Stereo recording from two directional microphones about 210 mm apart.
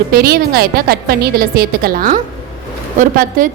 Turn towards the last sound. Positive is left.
turn(degrees=-40)  # may be behind; listen again after turning